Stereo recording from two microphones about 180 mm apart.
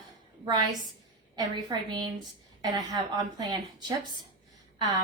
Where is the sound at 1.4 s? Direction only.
20° right (ahead or behind).